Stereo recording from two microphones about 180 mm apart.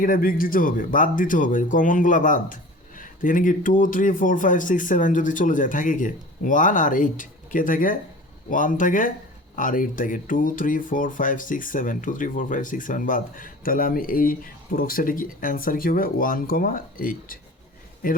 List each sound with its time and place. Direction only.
0.0 s speech: 50° left (ahead or behind)